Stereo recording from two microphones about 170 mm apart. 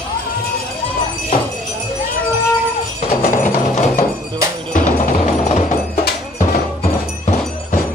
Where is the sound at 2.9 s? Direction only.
45° left (ahead or behind).